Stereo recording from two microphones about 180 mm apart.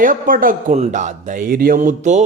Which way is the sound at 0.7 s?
40° right (ahead or behind).